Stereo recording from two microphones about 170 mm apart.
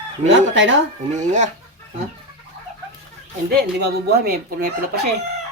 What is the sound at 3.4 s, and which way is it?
Speech, 70° right (ahead or behind).